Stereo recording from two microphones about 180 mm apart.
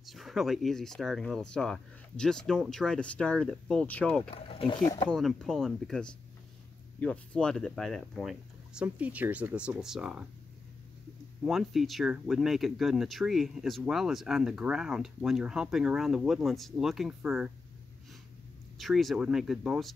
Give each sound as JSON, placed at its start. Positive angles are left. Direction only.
{"t": 0.0, "sound": "speech", "side_deg": 0}
{"t": 4.3, "sound": "speech", "side_deg": 30}
{"t": 5.0, "sound": "speech", "side_deg": 5}
{"t": 11.4, "sound": "speech", "side_deg": 0}
{"t": 18.8, "sound": "speech", "side_deg": 0}